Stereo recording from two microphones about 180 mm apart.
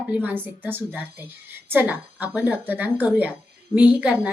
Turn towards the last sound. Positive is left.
turn(degrees=-5)  # may be behind; listen again after turning